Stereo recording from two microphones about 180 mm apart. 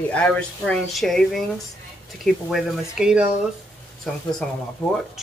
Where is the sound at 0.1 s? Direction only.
5° left (ahead or behind).